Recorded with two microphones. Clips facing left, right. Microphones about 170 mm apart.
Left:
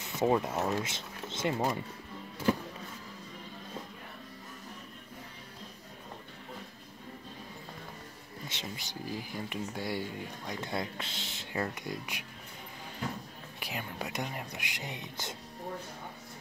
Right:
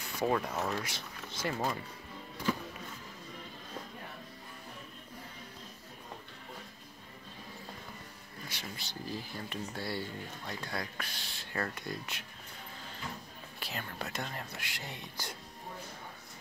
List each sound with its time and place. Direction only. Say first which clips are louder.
0.0 s speech: left 3 dB; 20° left (ahead or behind)
8.5 s speech: left 2 dB; 20° left (ahead or behind)
13.6 s speech: left 2 dB; 15° left (ahead or behind)